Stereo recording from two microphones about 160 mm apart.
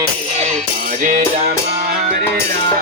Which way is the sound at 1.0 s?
55° right (ahead or behind).